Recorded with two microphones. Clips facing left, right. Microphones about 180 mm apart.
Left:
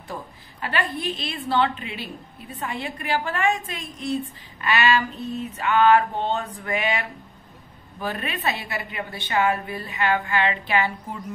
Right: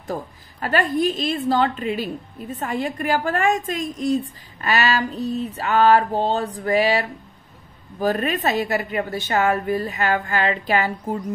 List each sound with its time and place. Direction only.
0.0 s a woman's voice: 45° right (ahead or behind)